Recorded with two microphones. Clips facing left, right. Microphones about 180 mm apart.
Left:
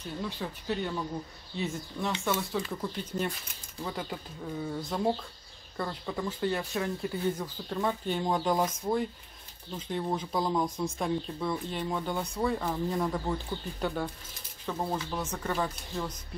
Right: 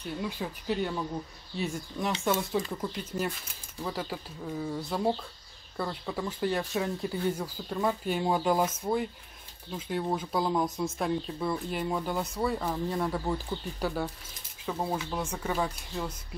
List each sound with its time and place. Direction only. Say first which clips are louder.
0.0 s speech: right 2 dB; 10° right (ahead or behind)